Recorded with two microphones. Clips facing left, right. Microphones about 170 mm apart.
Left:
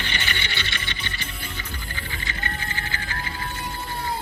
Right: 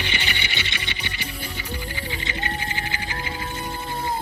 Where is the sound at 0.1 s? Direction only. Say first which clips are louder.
Right 1 dB; 15° right (ahead or behind).